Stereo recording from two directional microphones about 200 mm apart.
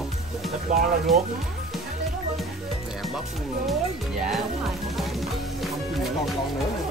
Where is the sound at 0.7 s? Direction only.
40° right (ahead or behind).